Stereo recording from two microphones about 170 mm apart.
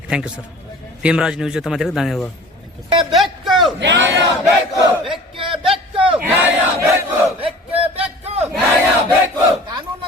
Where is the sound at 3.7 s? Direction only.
90° right.